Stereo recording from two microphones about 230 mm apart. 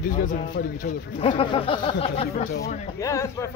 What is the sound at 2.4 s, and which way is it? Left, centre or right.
Speech, left.